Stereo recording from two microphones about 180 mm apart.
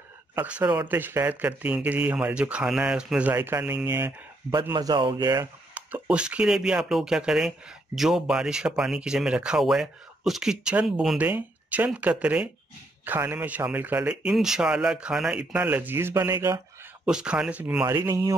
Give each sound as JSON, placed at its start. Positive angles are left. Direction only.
{"t": 0.4, "sound": "a man's voice", "side_deg": -5}
{"t": 5.8, "sound": "a man's voice", "side_deg": -10}